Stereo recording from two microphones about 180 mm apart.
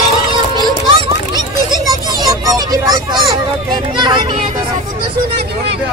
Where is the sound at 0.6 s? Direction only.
25° right (ahead or behind).